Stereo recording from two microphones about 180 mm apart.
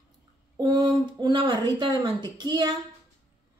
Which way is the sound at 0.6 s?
20° right (ahead or behind).